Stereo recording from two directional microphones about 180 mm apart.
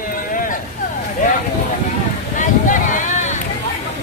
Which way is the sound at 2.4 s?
45° left (ahead or behind).